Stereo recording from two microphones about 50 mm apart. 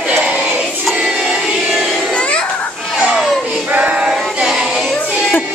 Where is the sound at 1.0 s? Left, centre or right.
Centre.